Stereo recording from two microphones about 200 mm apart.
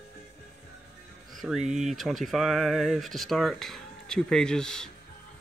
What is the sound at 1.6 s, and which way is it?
Speech, 35° right (ahead or behind).